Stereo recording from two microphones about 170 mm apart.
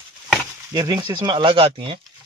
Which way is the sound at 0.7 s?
25° right (ahead or behind).